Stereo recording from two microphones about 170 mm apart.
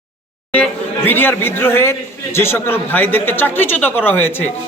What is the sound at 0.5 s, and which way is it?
Speech, 10° left (ahead or behind).